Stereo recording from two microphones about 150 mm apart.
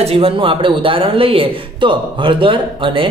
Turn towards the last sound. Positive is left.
turn(degrees=-35)  # may be behind; listen again after turning